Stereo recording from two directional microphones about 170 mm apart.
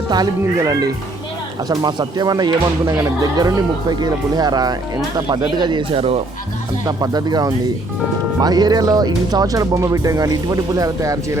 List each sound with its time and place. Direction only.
0.1 s speech: 20° right (ahead or behind)
6.8 s speech: 20° right (ahead or behind)